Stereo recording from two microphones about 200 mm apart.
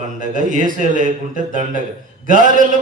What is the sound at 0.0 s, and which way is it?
Mantra, 40° right (ahead or behind).